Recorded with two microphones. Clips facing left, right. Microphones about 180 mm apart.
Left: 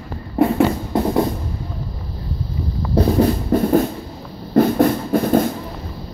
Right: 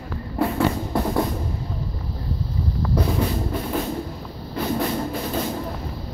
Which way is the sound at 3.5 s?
45° left (ahead or behind).